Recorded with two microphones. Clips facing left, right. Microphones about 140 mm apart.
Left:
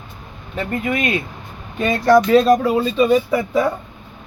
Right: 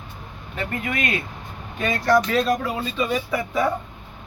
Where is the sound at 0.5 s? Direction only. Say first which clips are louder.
Left 6 dB; 25° left (ahead or behind).